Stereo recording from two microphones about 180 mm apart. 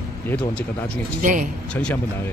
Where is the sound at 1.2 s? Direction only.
50° right (ahead or behind).